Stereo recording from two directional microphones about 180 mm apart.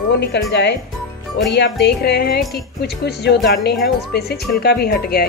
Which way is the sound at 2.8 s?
65° left (ahead or behind).